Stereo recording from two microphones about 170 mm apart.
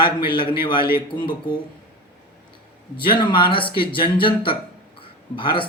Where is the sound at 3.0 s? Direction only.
30° left (ahead or behind).